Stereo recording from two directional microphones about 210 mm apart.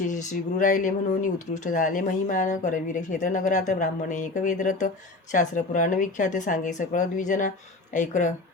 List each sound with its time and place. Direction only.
0.1 s speech: 35° left (ahead or behind)